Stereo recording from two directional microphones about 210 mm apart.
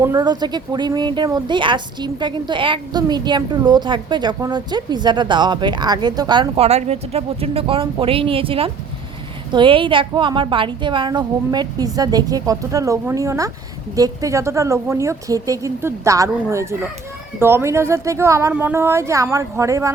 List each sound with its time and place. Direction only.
0.0 s a woman's voice: 15° right (ahead or behind)